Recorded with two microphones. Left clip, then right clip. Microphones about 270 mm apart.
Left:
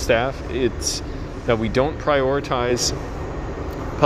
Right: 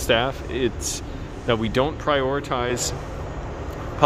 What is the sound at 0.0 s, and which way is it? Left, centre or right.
Speech, centre.